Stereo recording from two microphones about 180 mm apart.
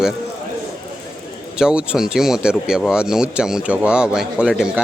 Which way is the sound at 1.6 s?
5° right (ahead or behind).